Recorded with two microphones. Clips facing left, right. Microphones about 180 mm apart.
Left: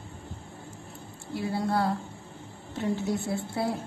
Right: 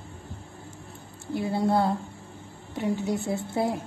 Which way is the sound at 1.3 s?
25° right (ahead or behind).